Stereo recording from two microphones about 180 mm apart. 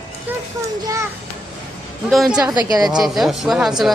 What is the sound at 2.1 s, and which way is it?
Speech, centre (ahead or behind).